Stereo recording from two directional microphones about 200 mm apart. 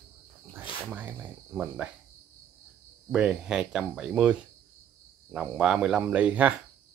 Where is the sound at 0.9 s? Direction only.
10° right (ahead or behind).